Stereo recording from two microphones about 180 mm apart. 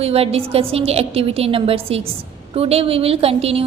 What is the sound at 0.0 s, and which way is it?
A woman's voice, 35° right (ahead or behind).